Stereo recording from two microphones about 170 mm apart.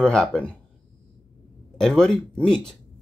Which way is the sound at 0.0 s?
5° left (ahead or behind).